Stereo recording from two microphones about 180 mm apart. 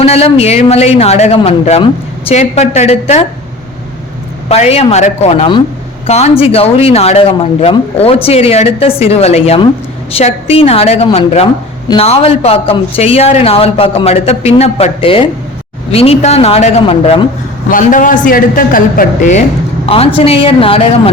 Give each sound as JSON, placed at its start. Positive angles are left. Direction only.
{"t": 0.0, "sound": "speech", "side_deg": 35}
{"t": 4.4, "sound": "speech", "side_deg": 35}
{"t": 17.7, "sound": "a woman's voice", "side_deg": 45}